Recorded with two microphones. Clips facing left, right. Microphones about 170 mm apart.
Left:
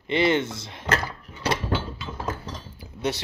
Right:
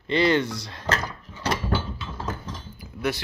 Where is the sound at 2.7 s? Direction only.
25° left (ahead or behind).